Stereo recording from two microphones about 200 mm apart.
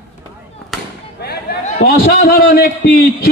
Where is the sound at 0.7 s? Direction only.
Centre (ahead or behind).